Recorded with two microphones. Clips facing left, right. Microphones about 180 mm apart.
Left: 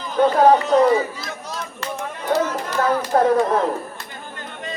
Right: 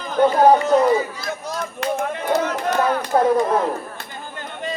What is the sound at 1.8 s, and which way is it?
Speech, 60° right (ahead or behind).